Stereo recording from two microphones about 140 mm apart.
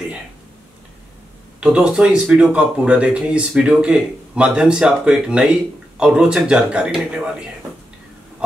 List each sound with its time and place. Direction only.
1.6 s speech: 5° right (ahead or behind)